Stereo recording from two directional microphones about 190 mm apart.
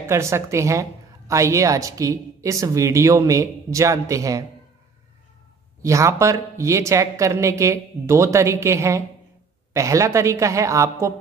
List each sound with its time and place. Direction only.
0.0 s a woman's voice: 15° right (ahead or behind)
5.8 s a woman's voice: 15° right (ahead or behind)